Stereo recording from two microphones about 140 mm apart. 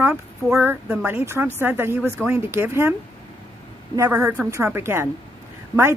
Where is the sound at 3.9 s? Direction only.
20° right (ahead or behind).